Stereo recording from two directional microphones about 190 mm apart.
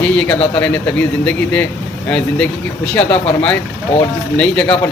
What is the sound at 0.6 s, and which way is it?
Speech, 5° left (ahead or behind).